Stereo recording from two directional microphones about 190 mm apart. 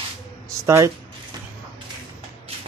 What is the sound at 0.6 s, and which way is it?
Speech, 15° right (ahead or behind).